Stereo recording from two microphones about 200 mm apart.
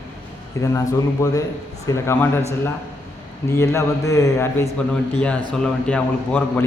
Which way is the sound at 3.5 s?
15° left (ahead or behind).